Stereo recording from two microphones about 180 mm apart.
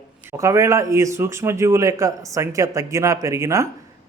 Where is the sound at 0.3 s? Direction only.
15° right (ahead or behind).